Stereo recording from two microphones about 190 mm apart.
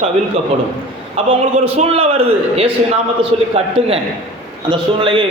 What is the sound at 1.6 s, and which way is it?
A man's voice, 30° right (ahead or behind).